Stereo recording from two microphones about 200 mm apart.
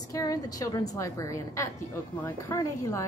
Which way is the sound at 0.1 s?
20° left (ahead or behind).